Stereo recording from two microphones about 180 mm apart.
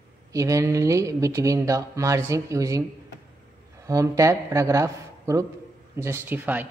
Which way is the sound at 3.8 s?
15° right (ahead or behind).